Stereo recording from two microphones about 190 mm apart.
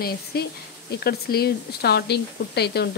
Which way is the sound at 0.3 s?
55° left (ahead or behind).